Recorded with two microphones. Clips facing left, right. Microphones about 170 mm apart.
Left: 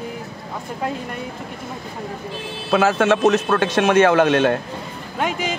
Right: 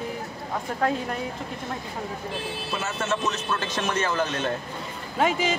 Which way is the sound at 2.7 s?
90° left.